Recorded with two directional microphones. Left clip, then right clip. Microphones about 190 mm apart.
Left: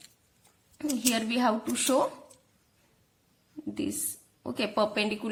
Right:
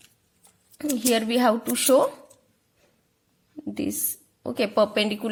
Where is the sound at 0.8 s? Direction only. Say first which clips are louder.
Right 6 dB; 35° right (ahead or behind).